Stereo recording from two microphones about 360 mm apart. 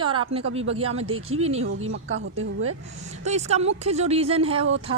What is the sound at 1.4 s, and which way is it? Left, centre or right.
Speech, centre.